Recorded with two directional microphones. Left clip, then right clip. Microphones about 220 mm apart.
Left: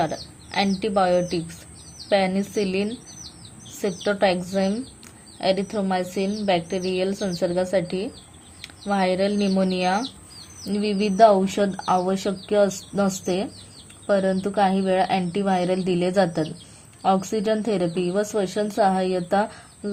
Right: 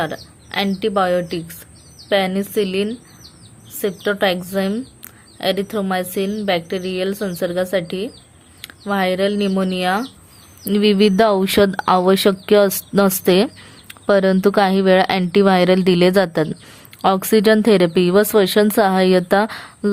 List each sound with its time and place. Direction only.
0.0 s a woman's voice: 20° right (ahead or behind)